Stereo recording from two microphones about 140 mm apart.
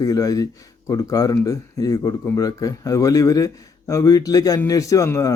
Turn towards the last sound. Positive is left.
turn(degrees=20)  # may be behind; listen again after turning